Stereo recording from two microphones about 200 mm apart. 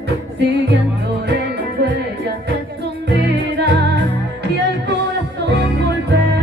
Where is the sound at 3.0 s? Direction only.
55° right (ahead or behind).